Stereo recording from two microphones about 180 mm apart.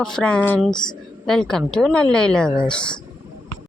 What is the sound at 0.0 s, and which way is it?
Speech, 5° left (ahead or behind).